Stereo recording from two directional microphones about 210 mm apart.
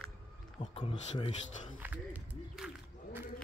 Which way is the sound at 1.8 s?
5° right (ahead or behind).